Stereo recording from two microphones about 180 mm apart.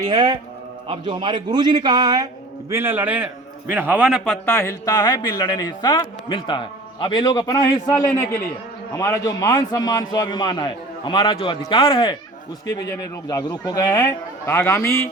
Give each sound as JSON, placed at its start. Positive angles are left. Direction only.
{"t": 0.0, "sound": "a man's voice", "side_deg": -20}
{"t": 4.4, "sound": "a man's voice", "side_deg": 15}